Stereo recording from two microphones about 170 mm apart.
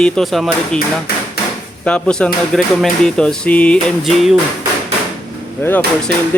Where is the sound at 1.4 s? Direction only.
70° left (ahead or behind).